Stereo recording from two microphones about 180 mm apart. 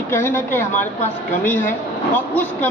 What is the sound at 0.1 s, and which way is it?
A woman's voice, 15° left (ahead or behind).